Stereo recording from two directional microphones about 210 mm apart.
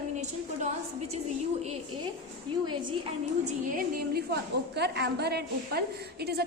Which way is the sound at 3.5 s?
45° right (ahead or behind).